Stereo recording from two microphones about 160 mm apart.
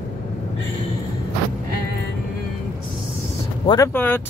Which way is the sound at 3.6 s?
20° left (ahead or behind).